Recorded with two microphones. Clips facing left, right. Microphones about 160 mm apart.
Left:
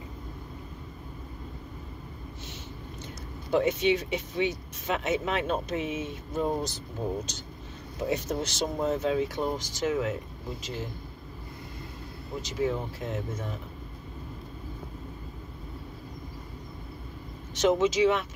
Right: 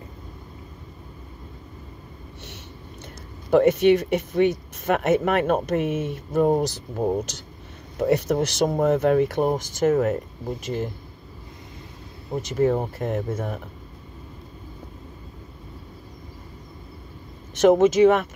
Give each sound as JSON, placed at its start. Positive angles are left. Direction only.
{"t": 3.4, "sound": "speech", "side_deg": -60}
{"t": 12.4, "sound": "speech", "side_deg": -55}
{"t": 17.6, "sound": "speech", "side_deg": -55}